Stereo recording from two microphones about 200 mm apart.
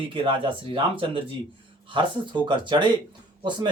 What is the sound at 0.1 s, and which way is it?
Speech, 25° right (ahead or behind).